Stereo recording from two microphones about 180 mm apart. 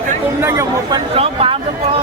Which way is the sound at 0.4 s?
20° right (ahead or behind).